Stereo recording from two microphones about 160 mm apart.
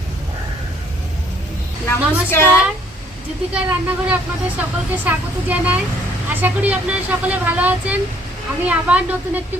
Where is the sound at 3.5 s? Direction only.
10° right (ahead or behind).